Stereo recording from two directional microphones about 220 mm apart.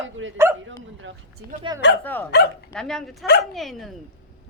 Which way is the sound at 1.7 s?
20° right (ahead or behind).